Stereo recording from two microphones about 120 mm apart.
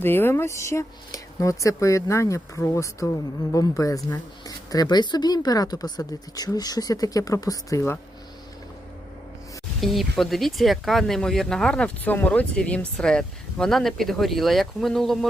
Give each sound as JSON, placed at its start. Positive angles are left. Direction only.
{"t": 0.0, "sound": "a woman's voice", "side_deg": 20}
{"t": 9.8, "sound": "speech", "side_deg": 0}